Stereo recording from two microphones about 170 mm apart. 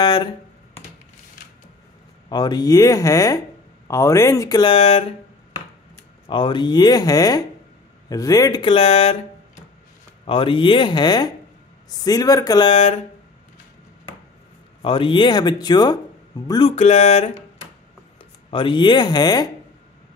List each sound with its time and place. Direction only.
0.0 s speech: 30° left (ahead or behind)
2.2 s speech: 25° left (ahead or behind)
6.2 s speech: 30° left (ahead or behind)
10.2 s speech: 30° left (ahead or behind)
14.8 s speech: 30° left (ahead or behind)
16.7 s a sound: 40° left (ahead or behind)
18.5 s speech: 30° left (ahead or behind)